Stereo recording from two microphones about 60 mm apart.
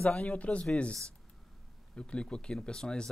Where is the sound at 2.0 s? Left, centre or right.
Centre.